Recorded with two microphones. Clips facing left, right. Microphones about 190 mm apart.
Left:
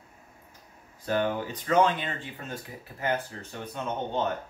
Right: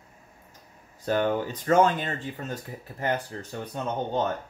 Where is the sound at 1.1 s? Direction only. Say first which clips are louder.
Right 3 dB; 40° right (ahead or behind).